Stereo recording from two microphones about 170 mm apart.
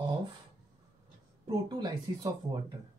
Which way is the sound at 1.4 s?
25° right (ahead or behind).